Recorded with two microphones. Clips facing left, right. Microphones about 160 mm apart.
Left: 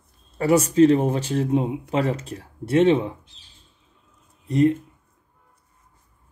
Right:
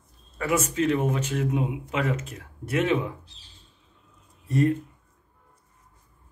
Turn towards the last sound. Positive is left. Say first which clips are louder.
# left 4 dB
turn(degrees=20)  # may be behind; listen again after turning